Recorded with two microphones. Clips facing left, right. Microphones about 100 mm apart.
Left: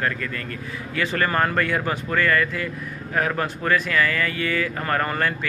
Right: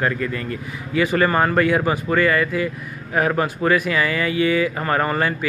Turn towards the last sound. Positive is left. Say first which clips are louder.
# right 3 dB
turn(degrees=-10)  # may be behind; listen again after turning